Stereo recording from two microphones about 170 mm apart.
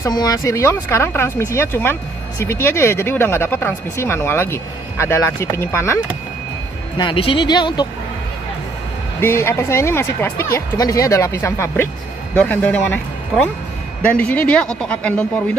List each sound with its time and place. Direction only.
0.0 s speech: 20° left (ahead or behind)
7.0 s speech: 30° left (ahead or behind)
9.2 s speech: 15° left (ahead or behind)